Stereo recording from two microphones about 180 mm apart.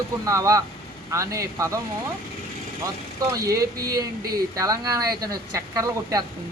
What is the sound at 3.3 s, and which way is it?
Speech, 20° right (ahead or behind).